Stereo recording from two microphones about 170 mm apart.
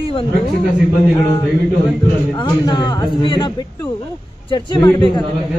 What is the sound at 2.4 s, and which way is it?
Speech, 25° left (ahead or behind).